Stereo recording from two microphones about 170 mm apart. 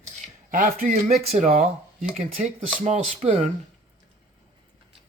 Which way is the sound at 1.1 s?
45° right (ahead or behind).